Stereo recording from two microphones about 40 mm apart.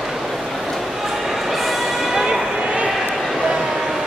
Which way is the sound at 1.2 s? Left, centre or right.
Centre.